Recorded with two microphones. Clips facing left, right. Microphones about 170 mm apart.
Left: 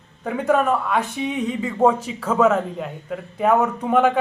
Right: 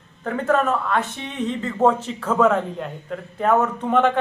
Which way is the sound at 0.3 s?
10° left (ahead or behind).